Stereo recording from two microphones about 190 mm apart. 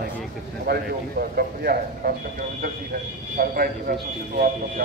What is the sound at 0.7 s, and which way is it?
A man's voice, 55° right (ahead or behind).